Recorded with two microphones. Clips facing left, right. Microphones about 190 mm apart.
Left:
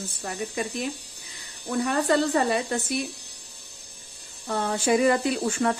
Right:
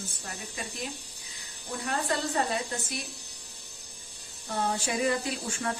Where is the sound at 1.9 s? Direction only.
75° left (ahead or behind).